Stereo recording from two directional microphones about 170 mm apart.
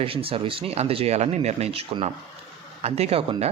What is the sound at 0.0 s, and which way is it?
Speech, 35° right (ahead or behind).